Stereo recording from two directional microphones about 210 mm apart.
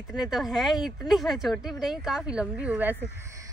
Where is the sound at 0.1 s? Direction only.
Centre (ahead or behind).